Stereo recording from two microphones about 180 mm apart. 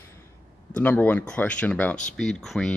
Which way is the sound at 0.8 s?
10° left (ahead or behind).